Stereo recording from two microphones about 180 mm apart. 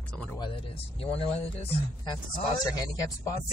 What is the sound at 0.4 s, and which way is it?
Speech, 30° left (ahead or behind).